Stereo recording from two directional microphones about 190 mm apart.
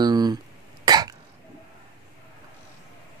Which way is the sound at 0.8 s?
20° right (ahead or behind).